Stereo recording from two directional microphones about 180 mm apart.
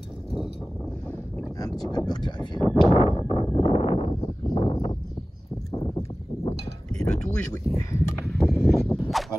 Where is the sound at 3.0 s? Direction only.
35° left (ahead or behind).